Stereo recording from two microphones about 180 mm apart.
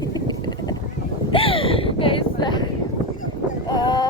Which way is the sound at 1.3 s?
30° left (ahead or behind).